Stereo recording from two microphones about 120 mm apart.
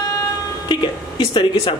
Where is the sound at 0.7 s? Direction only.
40° left (ahead or behind).